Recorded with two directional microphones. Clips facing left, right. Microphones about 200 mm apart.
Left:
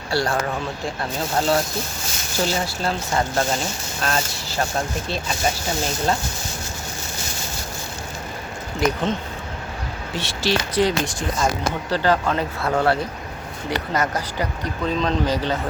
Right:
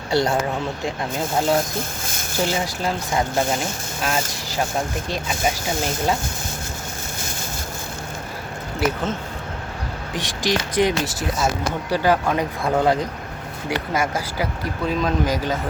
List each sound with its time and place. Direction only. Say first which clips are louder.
0.1 s speech: right 3 dB; 20° right (ahead or behind)
1.4 s speech: even; 15° right (ahead or behind)
2.0 s a sound: right 1 dB; 50° right (ahead or behind)
2.4 s speech: even; 15° right (ahead or behind)
10.2 s speech: even; 15° right (ahead or behind)
11.0 s speech: even; 5° right (ahead or behind)